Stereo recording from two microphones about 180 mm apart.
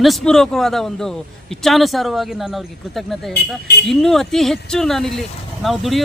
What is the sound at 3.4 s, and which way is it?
Speech, 65° left (ahead or behind).